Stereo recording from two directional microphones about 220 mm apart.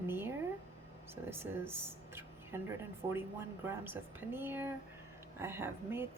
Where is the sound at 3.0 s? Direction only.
25° right (ahead or behind).